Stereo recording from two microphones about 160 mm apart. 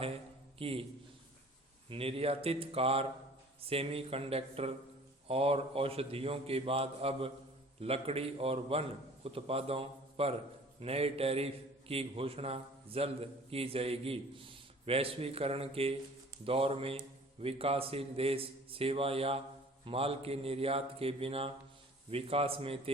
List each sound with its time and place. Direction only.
0.6 s a man's voice: 35° right (ahead or behind)
1.9 s a man's voice: 35° right (ahead or behind)